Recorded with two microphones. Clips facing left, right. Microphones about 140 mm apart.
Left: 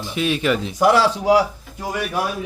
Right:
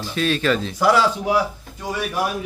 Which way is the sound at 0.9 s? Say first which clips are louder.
Left 1 dB; 30° left (ahead or behind).